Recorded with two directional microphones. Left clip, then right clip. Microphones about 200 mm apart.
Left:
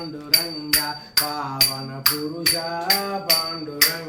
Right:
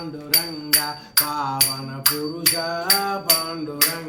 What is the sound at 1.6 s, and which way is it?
Music, 25° right (ahead or behind).